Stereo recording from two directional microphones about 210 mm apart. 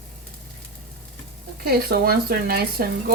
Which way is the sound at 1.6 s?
45° right (ahead or behind).